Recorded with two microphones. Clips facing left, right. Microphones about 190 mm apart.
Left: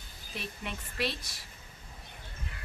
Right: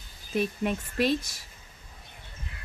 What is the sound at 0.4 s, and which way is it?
A woman's voice, 45° right (ahead or behind).